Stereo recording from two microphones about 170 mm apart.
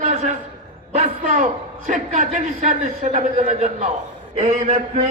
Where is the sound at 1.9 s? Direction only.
45° right (ahead or behind).